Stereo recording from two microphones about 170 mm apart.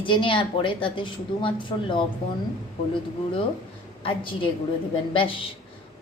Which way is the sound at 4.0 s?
30° left (ahead or behind).